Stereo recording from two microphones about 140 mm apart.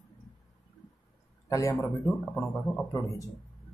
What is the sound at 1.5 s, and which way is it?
A man's voice, 25° left (ahead or behind).